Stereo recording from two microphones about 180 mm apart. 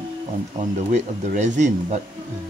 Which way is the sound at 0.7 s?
40° right (ahead or behind).